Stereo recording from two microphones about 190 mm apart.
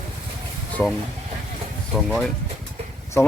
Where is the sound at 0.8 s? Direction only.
5° left (ahead or behind).